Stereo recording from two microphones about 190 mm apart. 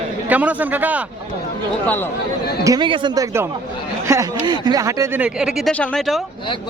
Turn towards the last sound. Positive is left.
turn(degrees=0)  # may be behind; listen again after turning